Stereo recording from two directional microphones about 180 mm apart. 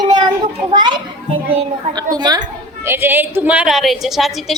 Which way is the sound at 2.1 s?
25° right (ahead or behind).